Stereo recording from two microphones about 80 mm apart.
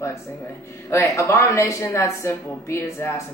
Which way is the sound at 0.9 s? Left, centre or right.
Left.